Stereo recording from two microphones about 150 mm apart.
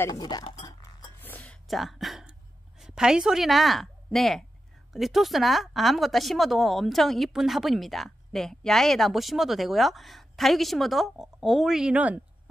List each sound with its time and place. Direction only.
0.0 s chink: 25° left (ahead or behind)
1.2 s whispering: 10° left (ahead or behind)
2.8 s a woman's voice: 5° right (ahead or behind)